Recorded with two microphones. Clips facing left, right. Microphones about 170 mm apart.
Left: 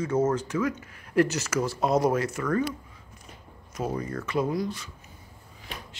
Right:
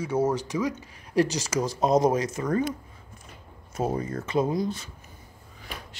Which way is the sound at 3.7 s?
25° right (ahead or behind).